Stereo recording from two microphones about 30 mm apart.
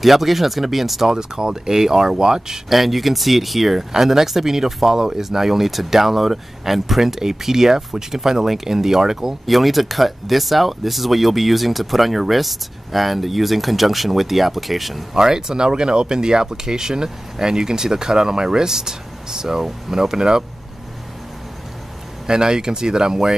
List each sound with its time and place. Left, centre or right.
0.0 s speech: centre
1.0 s speech: centre
2.7 s speech: centre
3.9 s speech: centre
9.5 s speech: centre
15.1 s speech: right
22.2 s speech: right